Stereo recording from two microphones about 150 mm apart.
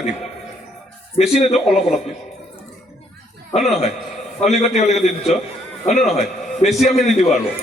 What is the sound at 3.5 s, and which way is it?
A man's voice, 45° left (ahead or behind).